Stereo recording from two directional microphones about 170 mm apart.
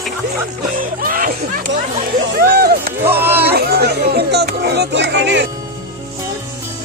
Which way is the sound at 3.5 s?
70° right (ahead or behind).